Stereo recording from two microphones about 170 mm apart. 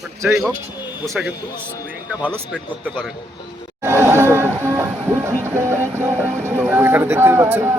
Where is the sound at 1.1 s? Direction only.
Centre (ahead or behind).